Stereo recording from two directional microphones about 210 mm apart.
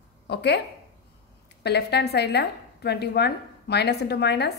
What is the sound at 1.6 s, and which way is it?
A woman's voice, 50° left (ahead or behind).